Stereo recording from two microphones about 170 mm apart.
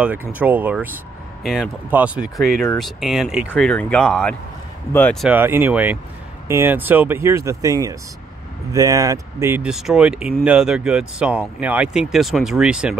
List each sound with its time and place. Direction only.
0.0 s speech: 10° right (ahead or behind)
5.2 s speech: 10° right (ahead or behind)
9.7 s speech: 5° right (ahead or behind)